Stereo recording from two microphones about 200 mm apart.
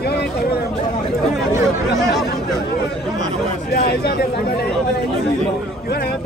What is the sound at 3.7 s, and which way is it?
Speech, 55° left (ahead or behind).